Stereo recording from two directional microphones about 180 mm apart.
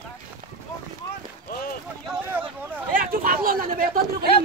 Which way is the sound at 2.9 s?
50° right (ahead or behind).